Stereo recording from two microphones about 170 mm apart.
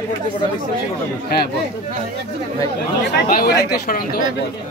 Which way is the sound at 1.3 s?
70° left (ahead or behind).